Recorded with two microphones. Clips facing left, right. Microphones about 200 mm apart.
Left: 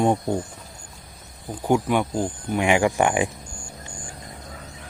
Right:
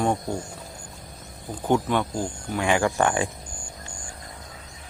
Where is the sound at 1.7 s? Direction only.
15° left (ahead or behind).